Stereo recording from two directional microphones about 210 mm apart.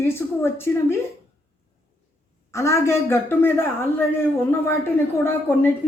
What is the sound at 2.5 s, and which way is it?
Speech, 15° left (ahead or behind).